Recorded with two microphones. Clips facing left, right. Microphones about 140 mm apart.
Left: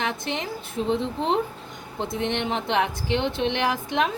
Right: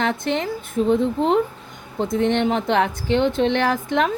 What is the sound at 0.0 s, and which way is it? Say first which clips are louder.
Speech: right 6 dB; 50° right (ahead or behind).